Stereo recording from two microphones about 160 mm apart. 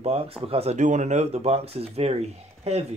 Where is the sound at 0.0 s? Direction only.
40° right (ahead or behind).